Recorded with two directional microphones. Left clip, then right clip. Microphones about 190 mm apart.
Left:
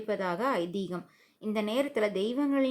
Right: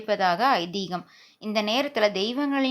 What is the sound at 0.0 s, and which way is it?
A woman's voice, 25° right (ahead or behind).